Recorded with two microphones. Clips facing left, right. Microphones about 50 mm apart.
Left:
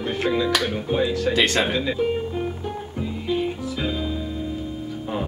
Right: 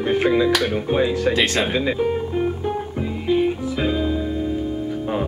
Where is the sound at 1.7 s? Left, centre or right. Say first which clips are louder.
Right 2 dB; right.